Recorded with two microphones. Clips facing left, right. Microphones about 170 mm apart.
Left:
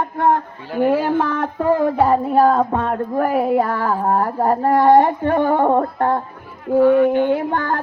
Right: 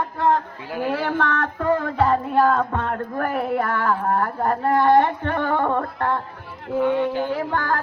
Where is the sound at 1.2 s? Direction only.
10° left (ahead or behind).